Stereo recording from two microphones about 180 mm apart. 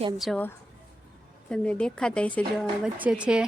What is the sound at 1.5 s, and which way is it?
Speech, 5° left (ahead or behind).